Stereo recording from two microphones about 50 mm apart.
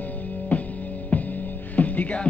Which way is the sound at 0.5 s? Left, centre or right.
Left.